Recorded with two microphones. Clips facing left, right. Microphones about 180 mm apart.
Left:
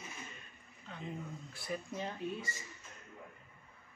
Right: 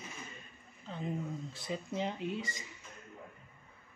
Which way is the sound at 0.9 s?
30° right (ahead or behind).